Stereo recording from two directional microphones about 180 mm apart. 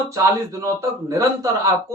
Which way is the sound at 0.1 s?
20° right (ahead or behind).